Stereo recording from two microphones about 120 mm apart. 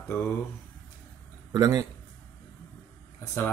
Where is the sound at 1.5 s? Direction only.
30° right (ahead or behind).